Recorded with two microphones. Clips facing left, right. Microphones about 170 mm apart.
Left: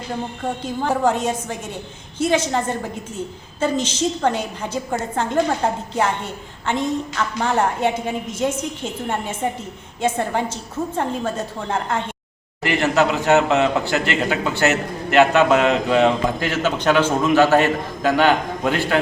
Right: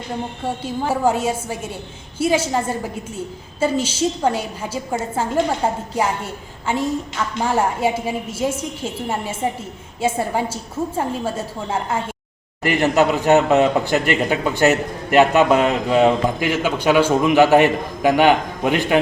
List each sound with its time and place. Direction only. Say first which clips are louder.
0.4 s a woman's voice: even; 5° right (ahead or behind)